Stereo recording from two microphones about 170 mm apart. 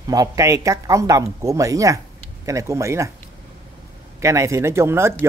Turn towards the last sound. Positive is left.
turn(degrees=-15)  # may be behind; listen again after turning